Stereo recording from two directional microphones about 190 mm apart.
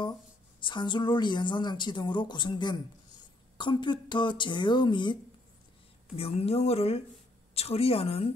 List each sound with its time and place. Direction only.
0.6 s a woman's voice: 25° left (ahead or behind)